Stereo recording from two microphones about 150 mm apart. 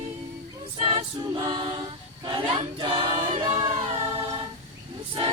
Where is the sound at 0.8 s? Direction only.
40° right (ahead or behind).